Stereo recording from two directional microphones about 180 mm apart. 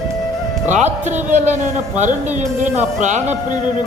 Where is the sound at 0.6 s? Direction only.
40° right (ahead or behind).